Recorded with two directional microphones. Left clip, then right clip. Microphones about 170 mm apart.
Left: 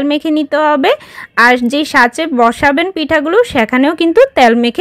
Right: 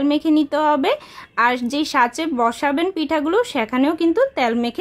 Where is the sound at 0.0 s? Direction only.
25° left (ahead or behind).